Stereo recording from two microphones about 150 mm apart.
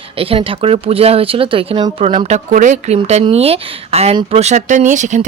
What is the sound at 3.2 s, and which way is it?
Speech, 40° right (ahead or behind).